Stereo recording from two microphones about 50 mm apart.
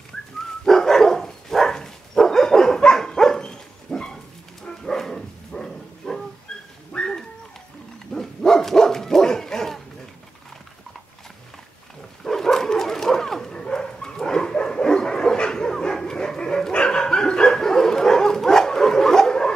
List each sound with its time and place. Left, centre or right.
0.7 s dog: centre
12.2 s dog: centre
14.1 s bow-wow: centre